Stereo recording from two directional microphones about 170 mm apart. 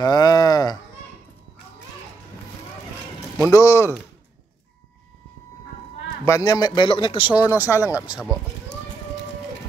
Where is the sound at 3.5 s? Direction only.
15° left (ahead or behind).